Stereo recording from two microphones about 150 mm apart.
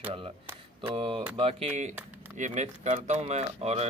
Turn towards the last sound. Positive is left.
turn(degrees=-45)  # may be behind; listen again after turning